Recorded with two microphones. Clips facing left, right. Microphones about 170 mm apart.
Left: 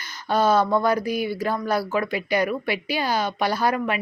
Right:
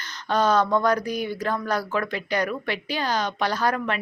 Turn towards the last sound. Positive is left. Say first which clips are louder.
# left 2 dB
turn(degrees=10)  # may be behind; listen again after turning